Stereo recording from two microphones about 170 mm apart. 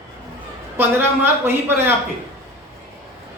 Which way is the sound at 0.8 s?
10° right (ahead or behind).